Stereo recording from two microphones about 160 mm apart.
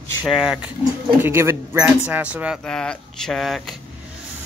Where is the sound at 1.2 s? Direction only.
15° right (ahead or behind).